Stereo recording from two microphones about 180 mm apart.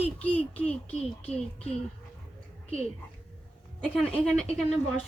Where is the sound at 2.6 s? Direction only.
35° left (ahead or behind).